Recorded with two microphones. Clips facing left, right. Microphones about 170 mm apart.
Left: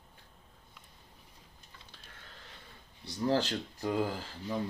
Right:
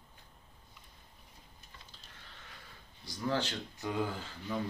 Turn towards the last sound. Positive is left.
turn(degrees=35)  # may be behind; listen again after turning